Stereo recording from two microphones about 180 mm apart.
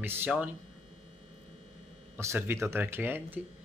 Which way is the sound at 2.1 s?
15° right (ahead or behind).